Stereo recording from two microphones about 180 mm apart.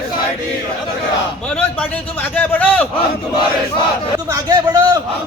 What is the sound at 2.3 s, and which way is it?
Speech, 10° left (ahead or behind).